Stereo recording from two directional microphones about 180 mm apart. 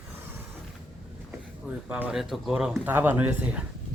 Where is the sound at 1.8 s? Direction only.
5° right (ahead or behind).